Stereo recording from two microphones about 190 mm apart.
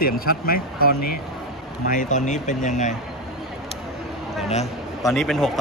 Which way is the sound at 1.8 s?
40° left (ahead or behind).